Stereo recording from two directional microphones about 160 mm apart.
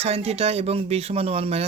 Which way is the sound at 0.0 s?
40° right (ahead or behind).